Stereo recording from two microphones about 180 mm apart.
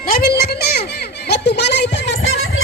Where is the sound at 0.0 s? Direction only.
55° left (ahead or behind).